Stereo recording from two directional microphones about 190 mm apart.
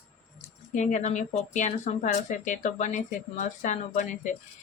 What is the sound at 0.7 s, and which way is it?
Speech, 40° left (ahead or behind).